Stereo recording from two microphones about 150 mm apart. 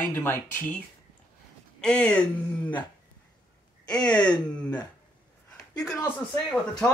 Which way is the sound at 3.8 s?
25° left (ahead or behind).